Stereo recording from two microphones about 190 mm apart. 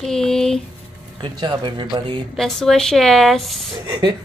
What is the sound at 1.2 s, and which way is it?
Speech, 25° right (ahead or behind).